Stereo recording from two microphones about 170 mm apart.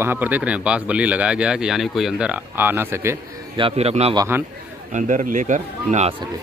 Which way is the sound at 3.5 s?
35° right (ahead or behind).